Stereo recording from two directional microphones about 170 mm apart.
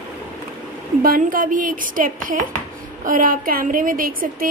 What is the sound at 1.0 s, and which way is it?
A woman's voice, 55° right (ahead or behind).